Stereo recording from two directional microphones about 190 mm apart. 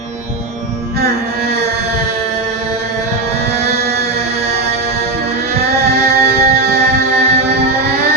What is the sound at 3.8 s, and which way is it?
Chant, 55° right (ahead or behind).